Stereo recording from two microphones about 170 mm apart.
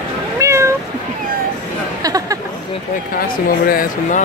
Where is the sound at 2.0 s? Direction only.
20° right (ahead or behind).